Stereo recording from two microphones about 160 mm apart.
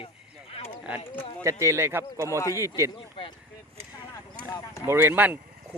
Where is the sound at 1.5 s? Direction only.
20° right (ahead or behind).